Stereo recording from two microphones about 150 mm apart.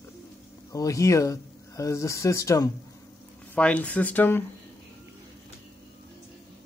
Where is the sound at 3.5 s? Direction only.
10° left (ahead or behind).